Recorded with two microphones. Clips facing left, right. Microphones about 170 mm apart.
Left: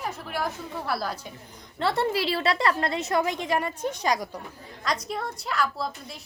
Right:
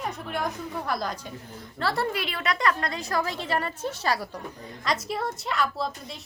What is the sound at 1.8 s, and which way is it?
A woman's voice, 20° left (ahead or behind).